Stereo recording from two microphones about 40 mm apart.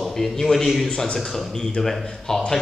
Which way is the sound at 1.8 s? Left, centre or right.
Centre.